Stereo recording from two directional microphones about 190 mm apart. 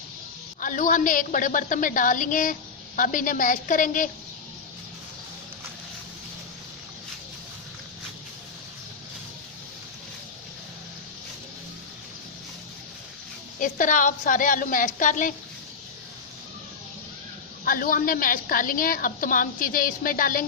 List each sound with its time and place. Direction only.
0.6 s a woman's voice: 45° left (ahead or behind)
13.6 s a woman's voice: 45° left (ahead or behind)
17.7 s a woman's voice: 50° left (ahead or behind)